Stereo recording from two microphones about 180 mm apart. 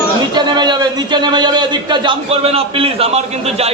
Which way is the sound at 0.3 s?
25° right (ahead or behind).